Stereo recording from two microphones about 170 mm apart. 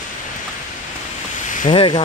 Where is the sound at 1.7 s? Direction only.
30° left (ahead or behind).